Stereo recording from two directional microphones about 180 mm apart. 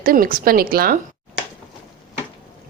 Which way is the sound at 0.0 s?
50° right (ahead or behind).